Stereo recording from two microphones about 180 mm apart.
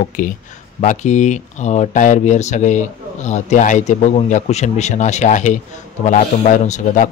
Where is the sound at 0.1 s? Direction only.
45° left (ahead or behind).